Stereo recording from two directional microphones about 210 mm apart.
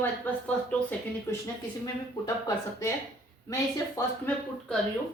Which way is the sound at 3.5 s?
15° left (ahead or behind).